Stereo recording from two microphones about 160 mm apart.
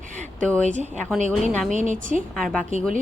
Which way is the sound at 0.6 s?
45° right (ahead or behind).